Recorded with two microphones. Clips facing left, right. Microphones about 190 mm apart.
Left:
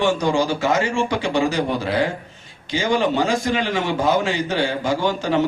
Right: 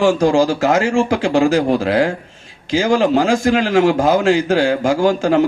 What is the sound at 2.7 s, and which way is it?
A man's voice, 90° right.